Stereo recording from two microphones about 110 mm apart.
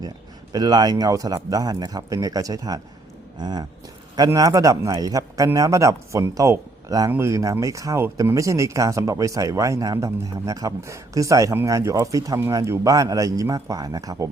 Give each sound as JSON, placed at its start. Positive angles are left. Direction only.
{"t": 0.5, "sound": "speech", "side_deg": -35}